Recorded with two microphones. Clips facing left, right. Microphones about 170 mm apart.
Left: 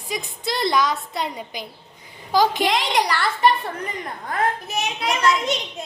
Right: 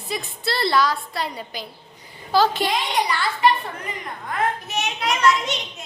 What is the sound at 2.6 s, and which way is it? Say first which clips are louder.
Speech: left 2 dB; 90° left.